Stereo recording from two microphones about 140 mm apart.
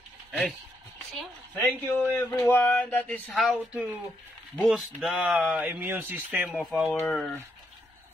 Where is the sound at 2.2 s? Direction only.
25° left (ahead or behind); by 3.5 s 5° left (ahead or behind).